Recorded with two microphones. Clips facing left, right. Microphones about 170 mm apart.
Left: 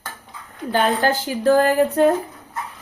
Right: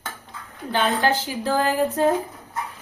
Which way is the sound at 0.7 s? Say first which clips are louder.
Left 2 dB; 45° left (ahead or behind).